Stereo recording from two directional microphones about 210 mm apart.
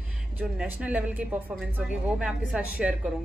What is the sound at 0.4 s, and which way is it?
Speech, 5° right (ahead or behind).